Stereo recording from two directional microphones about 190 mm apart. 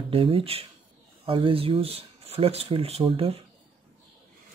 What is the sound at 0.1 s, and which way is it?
Speech, 30° right (ahead or behind).